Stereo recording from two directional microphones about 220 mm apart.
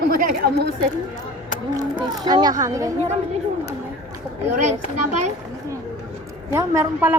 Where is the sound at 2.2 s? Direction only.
20° right (ahead or behind).